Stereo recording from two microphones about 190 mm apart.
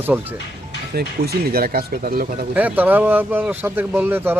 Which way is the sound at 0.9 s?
55° right (ahead or behind).